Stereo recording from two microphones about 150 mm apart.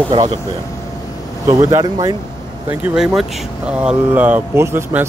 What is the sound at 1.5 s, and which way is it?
Speech, 20° right (ahead or behind).